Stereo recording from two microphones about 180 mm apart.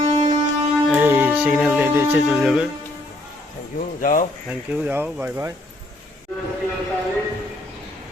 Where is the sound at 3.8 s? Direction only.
50° left (ahead or behind).